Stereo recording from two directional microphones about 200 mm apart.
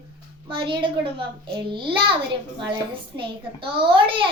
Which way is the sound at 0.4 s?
25° right (ahead or behind).